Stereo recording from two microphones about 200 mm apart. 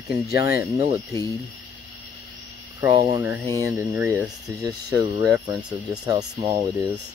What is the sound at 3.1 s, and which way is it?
Speech, 10° right (ahead or behind).